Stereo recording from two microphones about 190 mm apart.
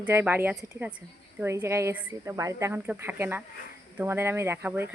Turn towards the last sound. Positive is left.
turn(degrees=-10)  # may be behind; listen again after turning